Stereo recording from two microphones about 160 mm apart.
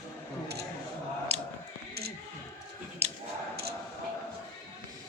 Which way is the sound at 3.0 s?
40° right (ahead or behind).